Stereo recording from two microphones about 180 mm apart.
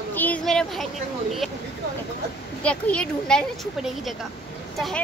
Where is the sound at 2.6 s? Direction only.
5° left (ahead or behind).